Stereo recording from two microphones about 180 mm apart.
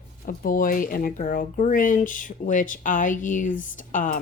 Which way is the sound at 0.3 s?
50° left (ahead or behind).